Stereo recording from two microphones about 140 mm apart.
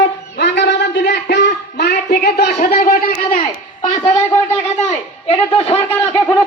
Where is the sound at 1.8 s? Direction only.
90° left.